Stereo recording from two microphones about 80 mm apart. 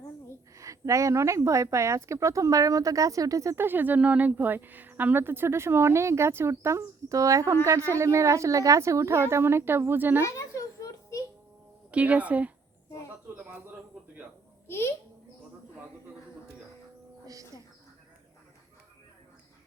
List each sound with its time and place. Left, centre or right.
0.5 s speech: right
3.6 s speech: right
10.2 s a sound: left
11.9 s a woman's voice: centre
14.7 s a child's voice: left